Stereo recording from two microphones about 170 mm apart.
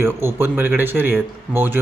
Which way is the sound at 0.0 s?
15° right (ahead or behind).